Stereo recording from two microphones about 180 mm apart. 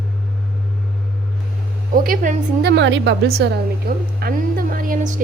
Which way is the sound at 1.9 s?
50° right (ahead or behind).